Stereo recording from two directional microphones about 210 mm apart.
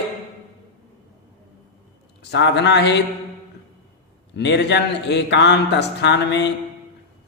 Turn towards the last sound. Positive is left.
turn(degrees=55)  # may be behind; listen again after turning